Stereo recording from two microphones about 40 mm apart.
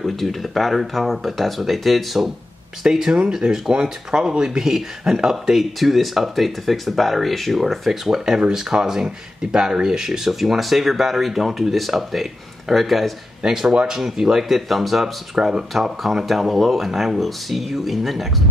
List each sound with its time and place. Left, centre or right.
0.0 s speech: centre
2.8 s speech: centre
5.5 s speech: centre
8.4 s speech: centre
13.4 s speech: centre
15.3 s speech: centre
15.7 s speech: centre